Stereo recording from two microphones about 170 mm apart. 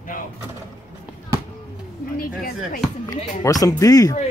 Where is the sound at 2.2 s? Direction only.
60° left (ahead or behind).